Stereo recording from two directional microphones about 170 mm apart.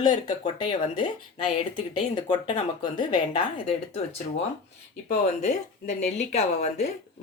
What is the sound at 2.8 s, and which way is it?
A woman's voice, 30° left (ahead or behind).